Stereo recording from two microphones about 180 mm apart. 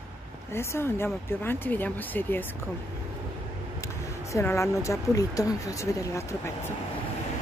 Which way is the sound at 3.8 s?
15° left (ahead or behind).